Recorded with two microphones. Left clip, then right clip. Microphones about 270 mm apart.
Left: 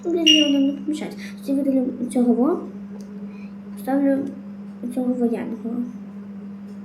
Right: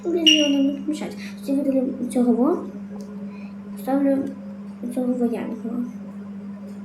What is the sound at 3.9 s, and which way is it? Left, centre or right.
Speech, centre.